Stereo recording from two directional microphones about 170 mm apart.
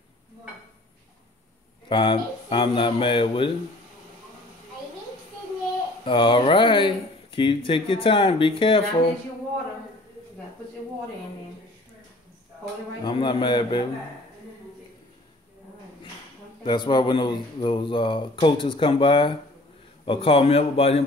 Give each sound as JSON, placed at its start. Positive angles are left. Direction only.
{"t": 1.9, "sound": "speech", "side_deg": 30}
{"t": 6.0, "sound": "speech", "side_deg": 30}
{"t": 13.0, "sound": "speech", "side_deg": 25}
{"t": 16.6, "sound": "speech", "side_deg": 25}